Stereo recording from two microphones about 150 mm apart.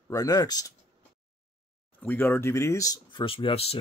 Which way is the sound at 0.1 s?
25° left (ahead or behind).